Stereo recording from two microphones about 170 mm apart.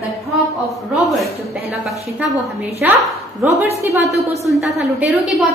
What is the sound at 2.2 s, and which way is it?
Speech, 5° right (ahead or behind).